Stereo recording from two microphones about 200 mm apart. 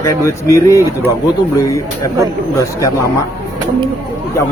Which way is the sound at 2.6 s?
15° left (ahead or behind).